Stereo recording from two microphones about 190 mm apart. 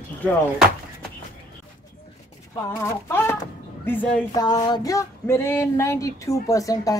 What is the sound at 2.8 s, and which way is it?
Speech, 15° left (ahead or behind).